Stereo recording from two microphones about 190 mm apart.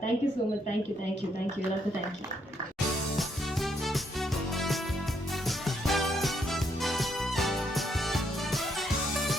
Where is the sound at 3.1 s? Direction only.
Centre (ahead or behind).